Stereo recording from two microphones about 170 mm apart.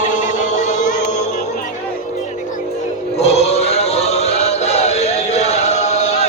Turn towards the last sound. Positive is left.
turn(degrees=40)  # may be behind; listen again after turning